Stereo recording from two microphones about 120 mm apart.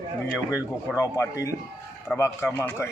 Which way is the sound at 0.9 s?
30° left (ahead or behind).